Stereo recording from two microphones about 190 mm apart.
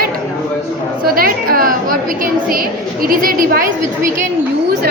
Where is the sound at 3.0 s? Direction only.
50° right (ahead or behind).